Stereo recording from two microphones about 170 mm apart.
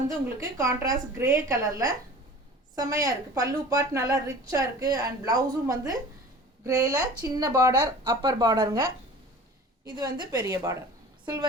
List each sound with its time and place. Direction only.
0.3 s speech: 20° right (ahead or behind)
9.9 s speech: 25° right (ahead or behind)